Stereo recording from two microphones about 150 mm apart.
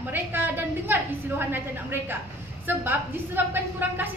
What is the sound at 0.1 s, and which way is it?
A woman's voice, 15° right (ahead or behind).